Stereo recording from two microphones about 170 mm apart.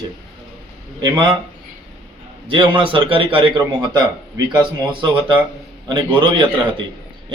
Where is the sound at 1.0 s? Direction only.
20° right (ahead or behind).